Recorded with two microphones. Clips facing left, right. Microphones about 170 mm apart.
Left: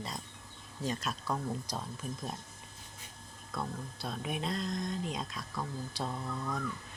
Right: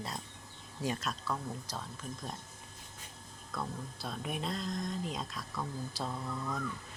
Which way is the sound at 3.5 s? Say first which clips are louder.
Left 1 dB; centre (ahead or behind).